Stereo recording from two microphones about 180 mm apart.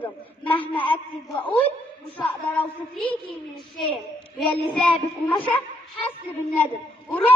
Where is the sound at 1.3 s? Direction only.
10° left (ahead or behind).